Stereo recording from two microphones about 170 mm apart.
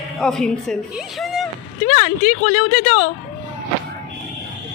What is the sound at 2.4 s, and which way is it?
Speech, 30° left (ahead or behind).